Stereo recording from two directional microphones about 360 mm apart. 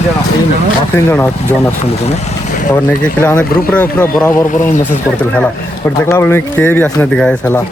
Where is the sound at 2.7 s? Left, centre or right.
Centre.